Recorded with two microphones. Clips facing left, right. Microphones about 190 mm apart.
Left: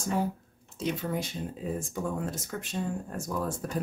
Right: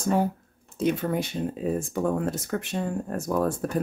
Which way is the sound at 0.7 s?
55° right (ahead or behind).